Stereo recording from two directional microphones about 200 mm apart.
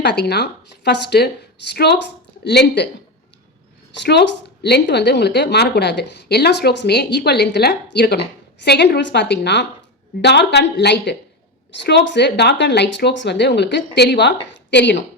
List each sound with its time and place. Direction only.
0.0 s a woman's voice: 55° left (ahead or behind)
4.0 s a woman's voice: 55° left (ahead or behind)